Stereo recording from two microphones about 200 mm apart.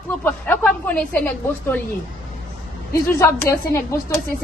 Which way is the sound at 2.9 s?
15° left (ahead or behind).